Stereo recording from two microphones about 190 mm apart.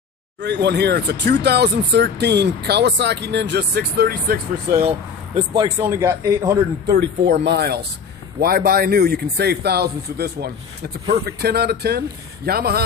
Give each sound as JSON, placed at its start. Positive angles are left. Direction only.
{"t": 0.4, "sound": "speech", "side_deg": -65}
{"t": 4.7, "sound": "speech", "side_deg": -30}
{"t": 5.8, "sound": "speech", "side_deg": -15}
{"t": 7.2, "sound": "speech", "side_deg": -60}